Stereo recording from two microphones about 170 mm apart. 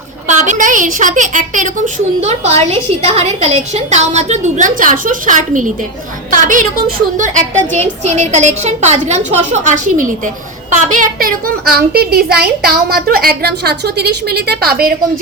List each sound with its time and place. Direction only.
0.3 s a woman's voice: 45° right (ahead or behind); by 14.9 s 65° right (ahead or behind)